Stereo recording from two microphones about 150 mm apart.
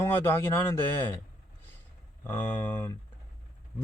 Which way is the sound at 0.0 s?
15° left (ahead or behind).